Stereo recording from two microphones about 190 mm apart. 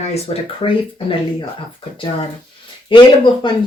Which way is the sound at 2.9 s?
25° left (ahead or behind).